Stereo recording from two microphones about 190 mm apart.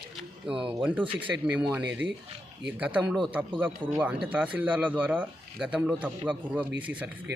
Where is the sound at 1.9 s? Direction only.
75° right (ahead or behind).